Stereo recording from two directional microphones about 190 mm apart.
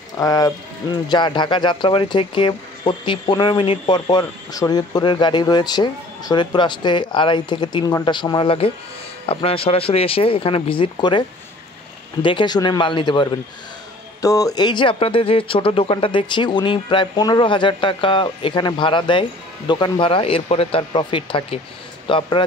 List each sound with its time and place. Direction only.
0.2 s speech: 20° left (ahead or behind)